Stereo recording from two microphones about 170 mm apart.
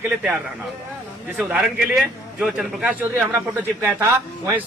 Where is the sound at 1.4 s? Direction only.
Centre (ahead or behind).